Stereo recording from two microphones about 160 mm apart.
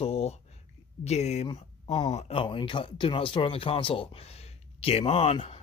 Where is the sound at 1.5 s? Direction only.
35° left (ahead or behind).